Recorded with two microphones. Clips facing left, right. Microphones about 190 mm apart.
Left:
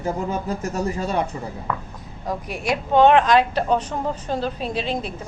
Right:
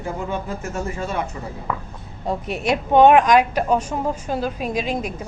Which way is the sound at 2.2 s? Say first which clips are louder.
Right 3 dB; 25° right (ahead or behind).